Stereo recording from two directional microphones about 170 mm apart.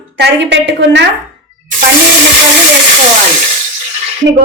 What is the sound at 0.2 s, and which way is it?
Speech, 90° right.